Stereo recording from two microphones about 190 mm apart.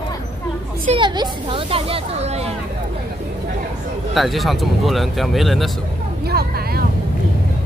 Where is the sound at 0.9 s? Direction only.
25° right (ahead or behind).